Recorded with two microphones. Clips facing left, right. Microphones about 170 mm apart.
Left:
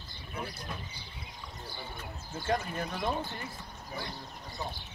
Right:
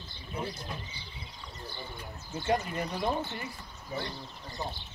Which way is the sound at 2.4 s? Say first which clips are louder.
Right 2 dB; 15° right (ahead or behind).